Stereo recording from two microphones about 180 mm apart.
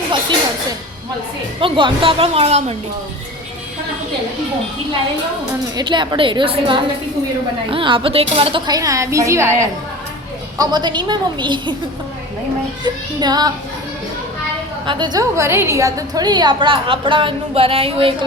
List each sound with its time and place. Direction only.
1.6 s speech: 30° right (ahead or behind)
5.7 s a woman's voice: 25° right (ahead or behind)
10.6 s a woman's voice: 25° right (ahead or behind)
12.8 s a woman's voice: 25° right (ahead or behind)
14.8 s a woman's voice: 25° right (ahead or behind)